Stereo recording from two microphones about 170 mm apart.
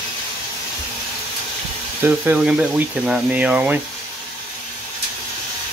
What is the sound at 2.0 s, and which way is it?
Speech, 10° right (ahead or behind).